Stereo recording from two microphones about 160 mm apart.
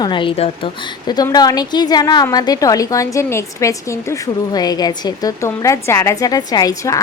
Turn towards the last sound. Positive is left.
turn(degrees=25)  # may be behind; listen again after turning